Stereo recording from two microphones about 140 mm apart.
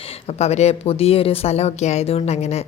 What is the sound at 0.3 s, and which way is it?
Speech, 50° left (ahead or behind).